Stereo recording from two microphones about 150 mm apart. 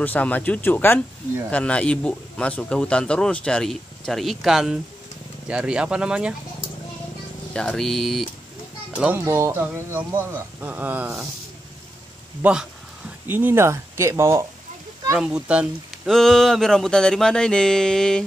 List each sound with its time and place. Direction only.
0.0 s speech: 10° left (ahead or behind); by 6.3 s 5° right (ahead or behind)
7.5 s music: 5° left (ahead or behind)
8.9 s a child's voice: 10° right (ahead or behind)
12.4 s speech: 10° right (ahead or behind)
15.1 s speech: 5° right (ahead or behind)
16.1 s music: 5° left (ahead or behind)